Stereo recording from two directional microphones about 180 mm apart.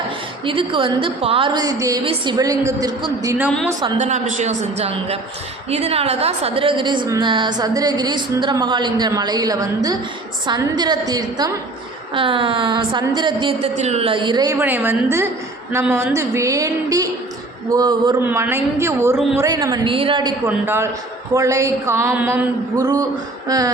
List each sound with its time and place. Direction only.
0.4 s a woman's voice: 30° right (ahead or behind)
3.9 s a man's voice: 40° right (ahead or behind); by 18.1 s 20° right (ahead or behind)
18.2 s a woman's voice: 10° right (ahead or behind); by 20.3 s 25° right (ahead or behind)
20.7 s a woman's voice: 15° right (ahead or behind)
22.8 s a woman's voice: 20° right (ahead or behind)